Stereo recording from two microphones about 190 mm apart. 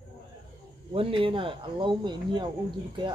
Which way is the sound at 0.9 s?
30° right (ahead or behind).